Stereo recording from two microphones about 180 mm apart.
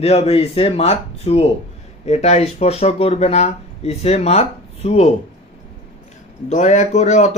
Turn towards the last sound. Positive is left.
turn(degrees=40)  # may be behind; listen again after turning